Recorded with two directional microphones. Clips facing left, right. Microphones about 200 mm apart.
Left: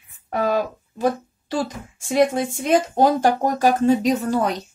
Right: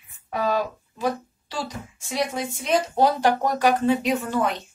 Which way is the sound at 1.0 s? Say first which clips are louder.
Left 4 dB; 50° left (ahead or behind).